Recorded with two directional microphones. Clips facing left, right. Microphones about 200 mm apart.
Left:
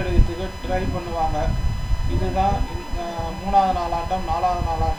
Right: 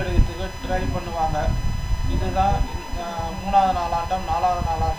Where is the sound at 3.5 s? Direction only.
15° left (ahead or behind).